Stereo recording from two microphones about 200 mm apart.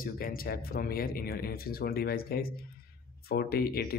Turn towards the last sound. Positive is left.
turn(degrees=50)  # may be behind; listen again after turning